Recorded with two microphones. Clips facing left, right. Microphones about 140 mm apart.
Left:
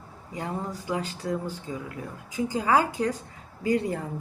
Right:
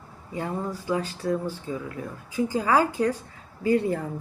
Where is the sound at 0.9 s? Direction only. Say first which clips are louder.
Right 3 dB; 20° left (ahead or behind).